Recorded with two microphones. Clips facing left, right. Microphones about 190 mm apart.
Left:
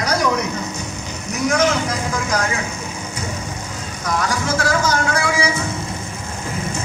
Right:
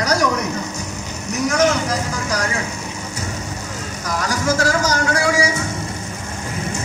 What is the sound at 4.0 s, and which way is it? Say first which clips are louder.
Speech: left 1 dB; 40° right (ahead or behind).